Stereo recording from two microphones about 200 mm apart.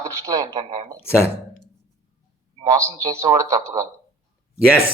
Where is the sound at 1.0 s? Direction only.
10° left (ahead or behind).